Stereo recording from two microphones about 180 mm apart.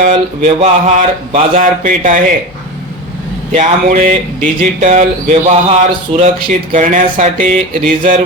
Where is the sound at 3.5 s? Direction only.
35° right (ahead or behind).